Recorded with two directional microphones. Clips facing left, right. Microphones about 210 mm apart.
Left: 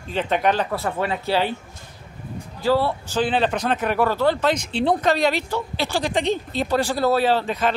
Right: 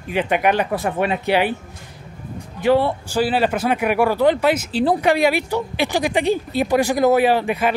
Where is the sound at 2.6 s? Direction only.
20° right (ahead or behind).